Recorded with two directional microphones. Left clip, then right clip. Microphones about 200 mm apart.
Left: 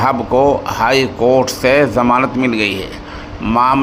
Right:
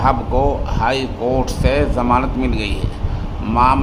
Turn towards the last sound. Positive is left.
turn(degrees=20)  # may be behind; listen again after turning